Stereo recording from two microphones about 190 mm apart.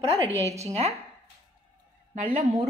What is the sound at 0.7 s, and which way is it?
Speech, 35° right (ahead or behind).